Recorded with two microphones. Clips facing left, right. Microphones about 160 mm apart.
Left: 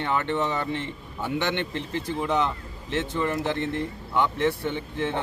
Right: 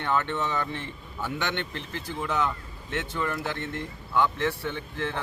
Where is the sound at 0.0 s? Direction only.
15° left (ahead or behind).